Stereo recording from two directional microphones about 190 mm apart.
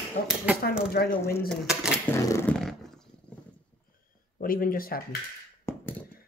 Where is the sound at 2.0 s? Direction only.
15° left (ahead or behind).